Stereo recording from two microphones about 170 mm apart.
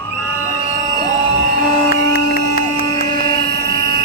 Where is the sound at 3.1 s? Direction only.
60° right (ahead or behind).